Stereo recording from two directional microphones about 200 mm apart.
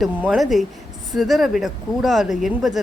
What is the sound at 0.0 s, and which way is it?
Speech, centre (ahead or behind).